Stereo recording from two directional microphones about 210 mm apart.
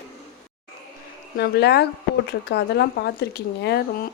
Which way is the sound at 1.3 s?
50° left (ahead or behind).